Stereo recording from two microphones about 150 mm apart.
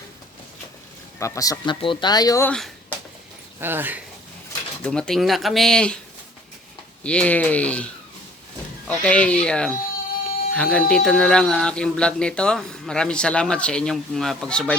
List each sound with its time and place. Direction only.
1.2 s speech: 25° left (ahead or behind)
3.6 s speech: 15° right (ahead or behind)
4.8 s speech: 5° left (ahead or behind)
7.0 s speech: 10° left (ahead or behind)
8.9 s speech: 10° left (ahead or behind)